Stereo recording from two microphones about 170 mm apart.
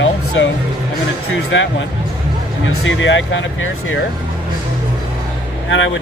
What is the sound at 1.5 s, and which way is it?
Speech, 90° left.